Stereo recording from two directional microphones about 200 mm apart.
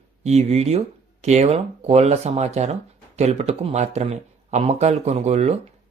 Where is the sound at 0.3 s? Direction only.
30° right (ahead or behind).